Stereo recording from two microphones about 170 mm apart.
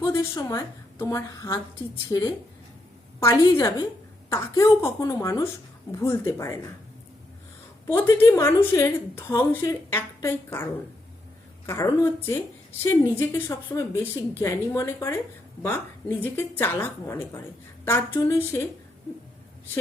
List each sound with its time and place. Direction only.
0.0 s a woman's voice: 15° left (ahead or behind)
7.9 s a woman's voice: 15° left (ahead or behind)